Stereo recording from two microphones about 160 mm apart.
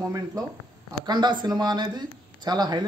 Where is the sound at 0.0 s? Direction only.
20° right (ahead or behind).